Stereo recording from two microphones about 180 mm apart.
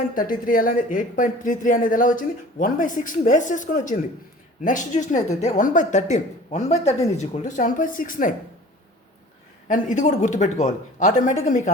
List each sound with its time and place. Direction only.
0.1 s speech: 50° left (ahead or behind)
9.6 s speech: 45° left (ahead or behind)